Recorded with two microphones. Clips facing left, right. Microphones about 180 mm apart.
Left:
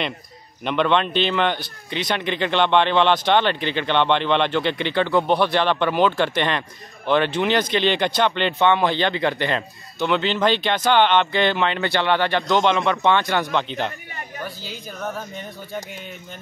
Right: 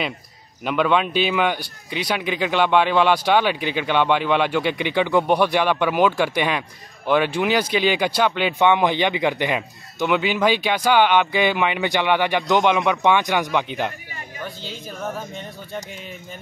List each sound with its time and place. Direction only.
0.7 s speech: 5° right (ahead or behind)
14.6 s speech: 5° left (ahead or behind)
15.0 s speech: 5° right (ahead or behind)